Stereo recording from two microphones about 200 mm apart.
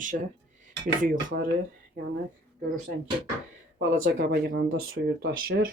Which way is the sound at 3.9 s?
50° right (ahead or behind).